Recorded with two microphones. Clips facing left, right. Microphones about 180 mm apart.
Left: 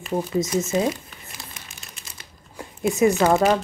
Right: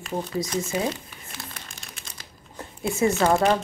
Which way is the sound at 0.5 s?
10° left (ahead or behind).